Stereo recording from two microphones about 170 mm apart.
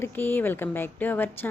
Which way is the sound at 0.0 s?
10° left (ahead or behind).